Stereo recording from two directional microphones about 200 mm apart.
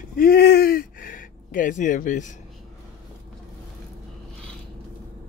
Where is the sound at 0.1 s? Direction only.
50° left (ahead or behind).